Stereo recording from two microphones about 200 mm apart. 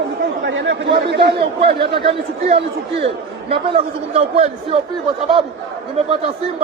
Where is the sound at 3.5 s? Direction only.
25° right (ahead or behind).